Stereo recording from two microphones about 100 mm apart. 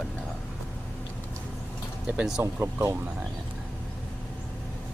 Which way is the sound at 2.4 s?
30° right (ahead or behind).